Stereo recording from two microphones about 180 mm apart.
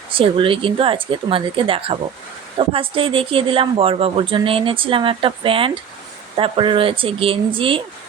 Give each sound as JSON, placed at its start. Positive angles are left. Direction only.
{"t": 0.1, "sound": "speech", "side_deg": -30}